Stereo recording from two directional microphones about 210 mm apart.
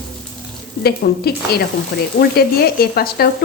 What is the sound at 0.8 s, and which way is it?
Stir, 50° left (ahead or behind).